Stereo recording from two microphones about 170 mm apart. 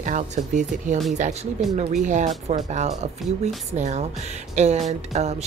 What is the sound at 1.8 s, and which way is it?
Speech, 45° right (ahead or behind).